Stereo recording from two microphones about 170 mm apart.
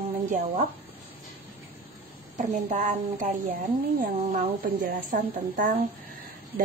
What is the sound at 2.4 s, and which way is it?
A woman's voice, 50° right (ahead or behind).